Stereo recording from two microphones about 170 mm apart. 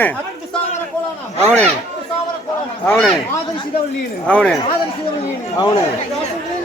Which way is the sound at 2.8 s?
10° left (ahead or behind).